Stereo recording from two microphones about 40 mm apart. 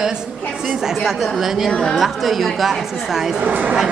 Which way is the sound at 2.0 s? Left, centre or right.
Centre.